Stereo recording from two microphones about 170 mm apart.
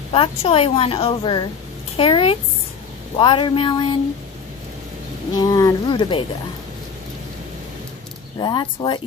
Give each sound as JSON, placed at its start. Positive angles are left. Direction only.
{"t": 0.1, "sound": "a woman's voice", "side_deg": 35}
{"t": 5.4, "sound": "speech", "side_deg": 20}
{"t": 8.4, "sound": "speech", "side_deg": 25}